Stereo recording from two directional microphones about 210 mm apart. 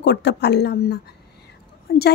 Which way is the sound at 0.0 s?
55° left (ahead or behind).